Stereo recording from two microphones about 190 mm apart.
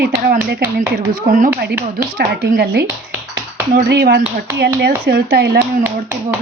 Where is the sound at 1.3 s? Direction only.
45° right (ahead or behind).